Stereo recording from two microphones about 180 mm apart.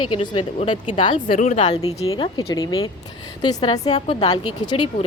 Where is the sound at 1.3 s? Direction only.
40° left (ahead or behind).